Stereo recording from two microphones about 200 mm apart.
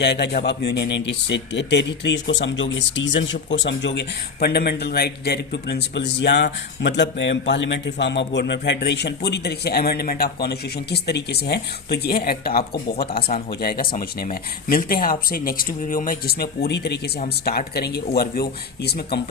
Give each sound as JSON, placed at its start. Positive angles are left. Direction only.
{"t": 0.0, "sound": "speech", "side_deg": 55}